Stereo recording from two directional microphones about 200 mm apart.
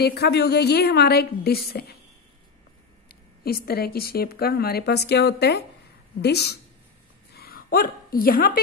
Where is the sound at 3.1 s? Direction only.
50° left (ahead or behind).